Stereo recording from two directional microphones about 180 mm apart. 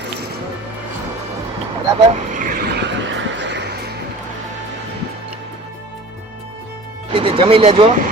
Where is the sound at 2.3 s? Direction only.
50° right (ahead or behind); by 3.8 s 75° right (ahead or behind).